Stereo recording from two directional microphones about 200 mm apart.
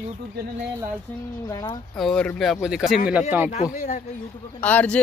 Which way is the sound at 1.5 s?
20° left (ahead or behind).